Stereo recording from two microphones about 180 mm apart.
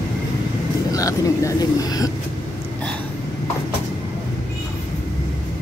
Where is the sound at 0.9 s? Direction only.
20° left (ahead or behind).